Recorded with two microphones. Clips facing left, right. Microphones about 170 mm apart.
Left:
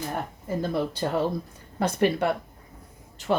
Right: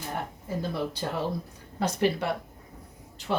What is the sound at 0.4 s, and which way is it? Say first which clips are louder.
Speech: left 5 dB; 50° left (ahead or behind).